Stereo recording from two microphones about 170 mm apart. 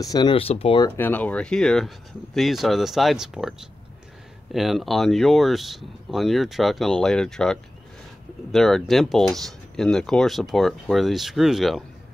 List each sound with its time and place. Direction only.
0.0 s speech: 25° left (ahead or behind)
0.8 s speech: 10° left (ahead or behind)